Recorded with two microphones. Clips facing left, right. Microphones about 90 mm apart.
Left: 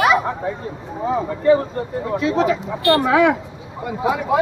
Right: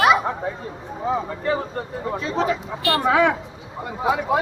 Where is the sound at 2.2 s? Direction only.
5° left (ahead or behind).